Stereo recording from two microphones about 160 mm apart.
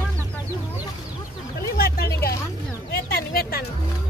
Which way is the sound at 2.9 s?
70° left (ahead or behind).